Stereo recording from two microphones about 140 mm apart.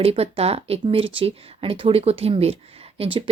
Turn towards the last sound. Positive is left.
turn(degrees=-40)  # may be behind; listen again after turning